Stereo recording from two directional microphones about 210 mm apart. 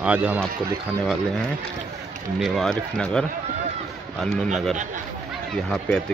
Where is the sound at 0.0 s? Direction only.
5° right (ahead or behind).